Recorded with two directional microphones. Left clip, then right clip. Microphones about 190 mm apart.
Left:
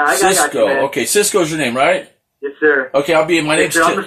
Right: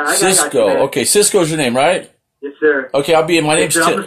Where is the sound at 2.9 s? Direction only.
45° right (ahead or behind).